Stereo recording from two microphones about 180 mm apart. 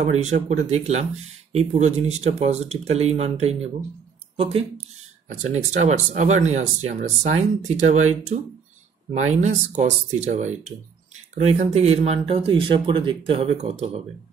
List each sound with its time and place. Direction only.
0.0 s speech: 40° right (ahead or behind)